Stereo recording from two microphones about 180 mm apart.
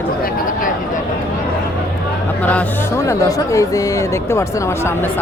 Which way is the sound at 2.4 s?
10° left (ahead or behind).